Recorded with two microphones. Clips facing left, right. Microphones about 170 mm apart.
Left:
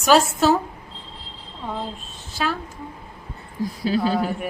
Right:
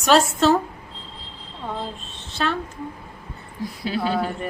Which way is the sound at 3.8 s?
35° left (ahead or behind).